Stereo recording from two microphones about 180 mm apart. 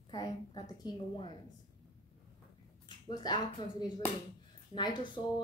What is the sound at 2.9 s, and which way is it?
Speech, 25° left (ahead or behind).